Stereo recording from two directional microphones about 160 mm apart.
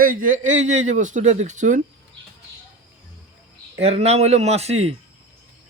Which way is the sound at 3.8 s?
40° right (ahead or behind).